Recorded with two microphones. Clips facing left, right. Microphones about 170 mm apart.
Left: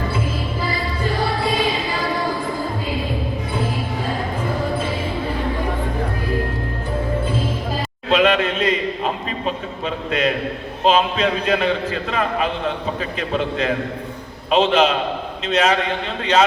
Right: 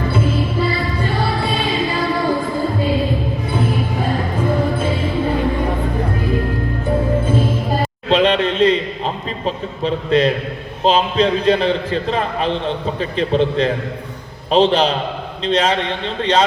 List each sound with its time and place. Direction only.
8.1 s a man's voice: 30° right (ahead or behind)
9.8 s a man's voice: 35° right (ahead or behind)